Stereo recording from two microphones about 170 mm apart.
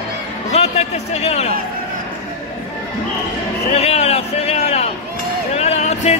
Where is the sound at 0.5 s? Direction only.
40° left (ahead or behind).